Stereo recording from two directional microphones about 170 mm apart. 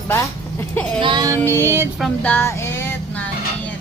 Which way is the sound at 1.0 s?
25° right (ahead or behind).